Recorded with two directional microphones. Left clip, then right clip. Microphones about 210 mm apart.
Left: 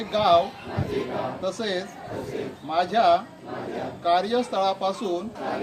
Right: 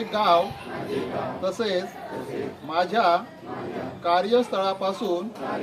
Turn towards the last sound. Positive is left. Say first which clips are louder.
# right 1 dB
turn(degrees=-20)  # may be behind; listen again after turning